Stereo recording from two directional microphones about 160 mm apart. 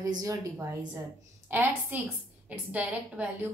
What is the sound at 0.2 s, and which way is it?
A woman's voice, 20° right (ahead or behind).